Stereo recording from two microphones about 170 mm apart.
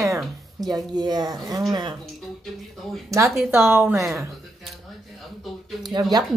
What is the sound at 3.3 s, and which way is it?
Speech, 15° right (ahead or behind).